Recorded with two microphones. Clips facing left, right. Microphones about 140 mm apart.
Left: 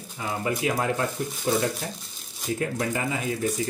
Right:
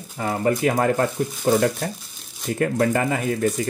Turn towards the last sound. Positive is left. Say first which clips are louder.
# right 6 dB
turn(degrees=-55)  # may be behind; listen again after turning